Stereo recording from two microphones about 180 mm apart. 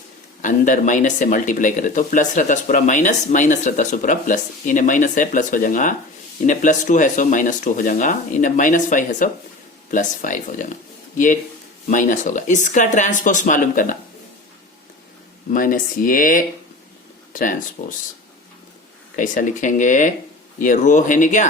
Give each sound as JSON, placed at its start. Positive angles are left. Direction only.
{"t": 0.4, "sound": "speech", "side_deg": 45}
{"t": 11.9, "sound": "speech", "side_deg": 45}
{"t": 15.5, "sound": "speech", "side_deg": 50}
{"t": 19.1, "sound": "speech", "side_deg": 45}